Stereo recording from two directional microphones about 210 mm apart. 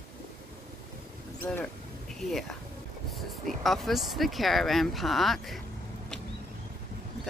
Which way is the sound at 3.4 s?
Centre (ahead or behind).